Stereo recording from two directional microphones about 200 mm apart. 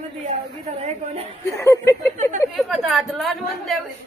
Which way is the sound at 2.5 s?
Centre (ahead or behind).